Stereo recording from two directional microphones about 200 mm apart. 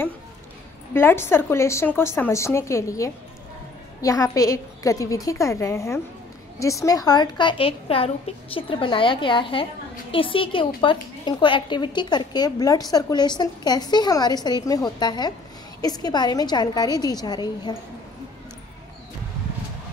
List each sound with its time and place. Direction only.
0.9 s a woman's voice: 10° left (ahead or behind)